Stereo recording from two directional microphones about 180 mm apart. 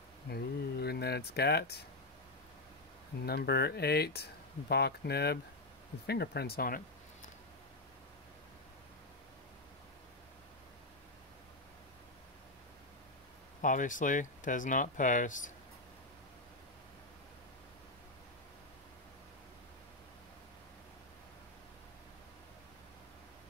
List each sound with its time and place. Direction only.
0.3 s a sound: 65° left (ahead or behind)
3.3 s speech: 65° left (ahead or behind)
13.6 s speech: 45° left (ahead or behind)